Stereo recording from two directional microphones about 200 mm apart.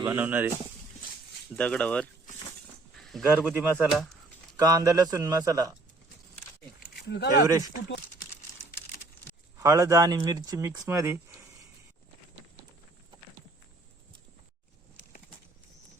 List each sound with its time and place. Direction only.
0.0 s speech: 10° right (ahead or behind)
1.5 s speech: 5° left (ahead or behind)
2.9 s a sound: centre (ahead or behind)
3.2 s speech: 10° right (ahead or behind)
7.1 s speech: 55° left (ahead or behind)
7.4 s speech: 15° right (ahead or behind)
9.6 s speech: 15° right (ahead or behind)